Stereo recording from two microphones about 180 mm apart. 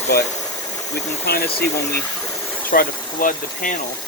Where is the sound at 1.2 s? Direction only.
60° left (ahead or behind).